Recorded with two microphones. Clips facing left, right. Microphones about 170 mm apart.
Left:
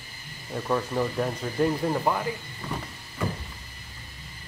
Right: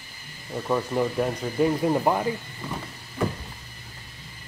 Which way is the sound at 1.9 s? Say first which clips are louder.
Right 3 dB; 20° right (ahead or behind).